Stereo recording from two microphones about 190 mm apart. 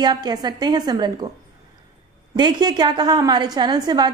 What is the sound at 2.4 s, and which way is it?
A woman's voice, 20° right (ahead or behind).